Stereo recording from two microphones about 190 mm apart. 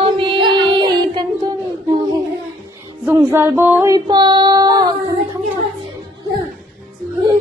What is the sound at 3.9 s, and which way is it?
Child singing, 20° right (ahead or behind).